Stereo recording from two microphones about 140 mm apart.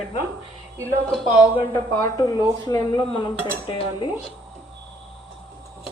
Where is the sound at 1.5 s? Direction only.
15° left (ahead or behind).